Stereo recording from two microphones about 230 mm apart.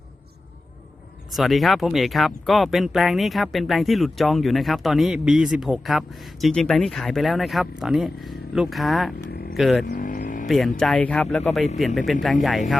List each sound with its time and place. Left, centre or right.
1.3 s speech: centre
9.8 s a sound: left
10.4 s speech: centre